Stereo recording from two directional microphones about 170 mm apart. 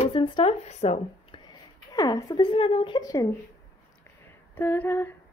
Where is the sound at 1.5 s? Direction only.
20° left (ahead or behind).